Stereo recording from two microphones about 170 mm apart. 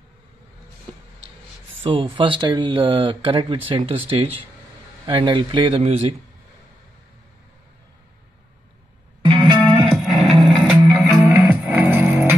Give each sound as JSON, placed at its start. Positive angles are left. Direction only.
{"t": 1.9, "sound": "speech", "side_deg": -30}
{"t": 9.2, "sound": "music", "side_deg": -30}
{"t": 9.9, "sound": "a sound", "side_deg": 0}
{"t": 10.4, "sound": "music", "side_deg": 0}
{"t": 11.2, "sound": "music", "side_deg": -10}